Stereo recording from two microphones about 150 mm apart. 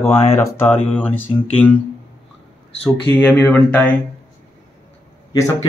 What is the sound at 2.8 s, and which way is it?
Speech, 10° left (ahead or behind).